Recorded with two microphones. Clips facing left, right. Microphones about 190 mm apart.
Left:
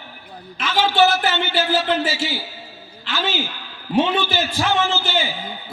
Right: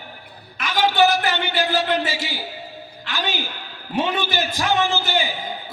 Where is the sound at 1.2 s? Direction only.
15° right (ahead or behind).